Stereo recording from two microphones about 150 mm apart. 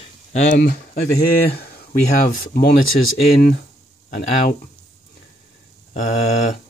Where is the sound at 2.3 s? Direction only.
80° left.